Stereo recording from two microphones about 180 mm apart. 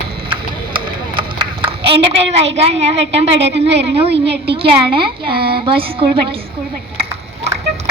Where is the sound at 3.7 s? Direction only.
35° right (ahead or behind).